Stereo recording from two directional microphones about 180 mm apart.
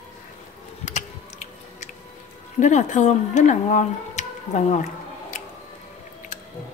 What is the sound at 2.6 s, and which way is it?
Speech, 40° left (ahead or behind).